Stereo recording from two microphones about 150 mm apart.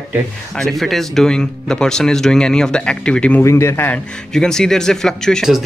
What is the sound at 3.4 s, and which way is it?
Speech, 20° left (ahead or behind).